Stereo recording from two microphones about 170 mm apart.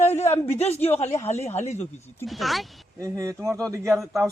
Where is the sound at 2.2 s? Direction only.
Centre (ahead or behind).